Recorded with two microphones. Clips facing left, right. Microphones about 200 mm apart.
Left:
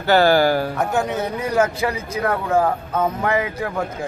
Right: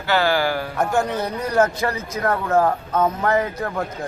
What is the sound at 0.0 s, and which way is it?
Speech, 45° left (ahead or behind).